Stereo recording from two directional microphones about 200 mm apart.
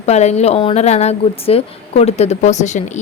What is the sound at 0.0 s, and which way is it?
Speech, 35° left (ahead or behind).